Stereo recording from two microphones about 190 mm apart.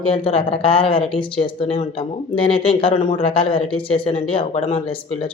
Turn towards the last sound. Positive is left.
turn(degrees=30)  # may be behind; listen again after turning